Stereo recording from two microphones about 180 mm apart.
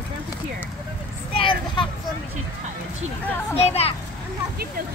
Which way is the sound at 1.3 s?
30° left (ahead or behind).